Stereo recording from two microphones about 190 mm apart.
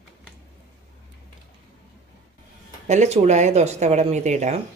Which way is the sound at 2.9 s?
35° right (ahead or behind).